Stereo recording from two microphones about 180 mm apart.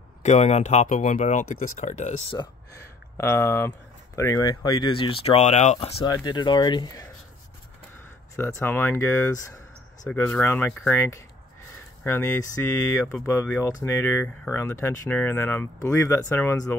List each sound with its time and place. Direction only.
0.2 s speech: 40° left (ahead or behind)
3.2 s speech: 15° left (ahead or behind); by 6.0 s 35° left (ahead or behind)
6.0 s speech: 20° left (ahead or behind)
8.4 s speech: 15° left (ahead or behind)